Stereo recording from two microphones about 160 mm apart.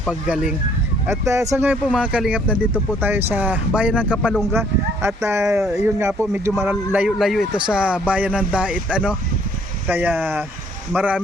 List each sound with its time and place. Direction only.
0.1 s speech: 5° right (ahead or behind)
1.0 s speech: 15° right (ahead or behind)